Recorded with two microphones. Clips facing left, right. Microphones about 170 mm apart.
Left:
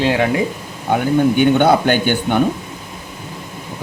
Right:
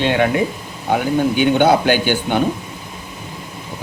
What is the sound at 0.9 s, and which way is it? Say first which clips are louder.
Speech: left 2 dB; 50° left (ahead or behind).